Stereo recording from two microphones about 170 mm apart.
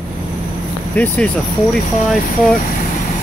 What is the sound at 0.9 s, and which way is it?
Speech, 10° left (ahead or behind).